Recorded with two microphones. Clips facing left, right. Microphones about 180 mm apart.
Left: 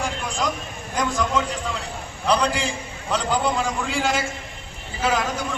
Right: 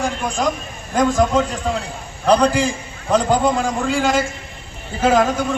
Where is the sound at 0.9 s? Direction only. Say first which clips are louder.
Right 7 dB; 45° right (ahead or behind).